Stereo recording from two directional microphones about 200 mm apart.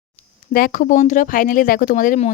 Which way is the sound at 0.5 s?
45° left (ahead or behind).